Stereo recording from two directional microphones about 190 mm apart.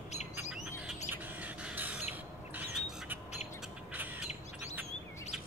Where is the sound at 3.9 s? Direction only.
10° right (ahead or behind).